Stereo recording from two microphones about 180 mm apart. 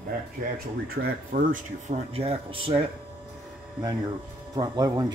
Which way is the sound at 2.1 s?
35° right (ahead or behind).